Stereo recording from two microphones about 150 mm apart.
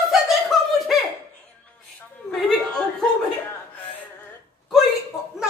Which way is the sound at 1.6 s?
10° left (ahead or behind).